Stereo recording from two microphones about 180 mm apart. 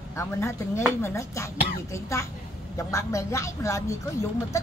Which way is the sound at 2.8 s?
15° left (ahead or behind).